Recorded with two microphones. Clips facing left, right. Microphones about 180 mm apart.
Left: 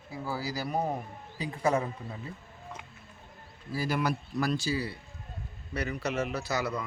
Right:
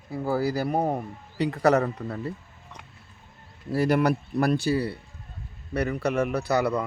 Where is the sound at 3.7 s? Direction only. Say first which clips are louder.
Right 8 dB; 65° right (ahead or behind).